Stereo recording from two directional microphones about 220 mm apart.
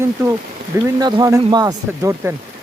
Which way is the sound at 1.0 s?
20° right (ahead or behind).